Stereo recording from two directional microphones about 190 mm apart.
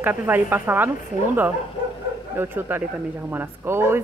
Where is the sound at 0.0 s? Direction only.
10° right (ahead or behind).